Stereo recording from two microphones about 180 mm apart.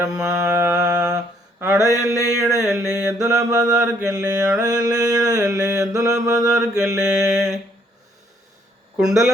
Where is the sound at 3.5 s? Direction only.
20° right (ahead or behind).